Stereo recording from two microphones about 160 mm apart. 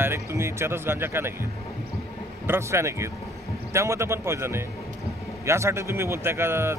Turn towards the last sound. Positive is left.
turn(degrees=-15)  # may be behind; listen again after turning